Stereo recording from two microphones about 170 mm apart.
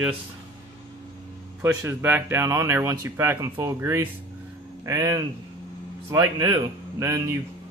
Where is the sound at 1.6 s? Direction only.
15° right (ahead or behind).